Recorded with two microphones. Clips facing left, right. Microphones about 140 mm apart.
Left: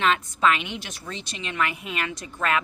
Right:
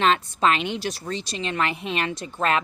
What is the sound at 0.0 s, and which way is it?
Speech, 30° right (ahead or behind).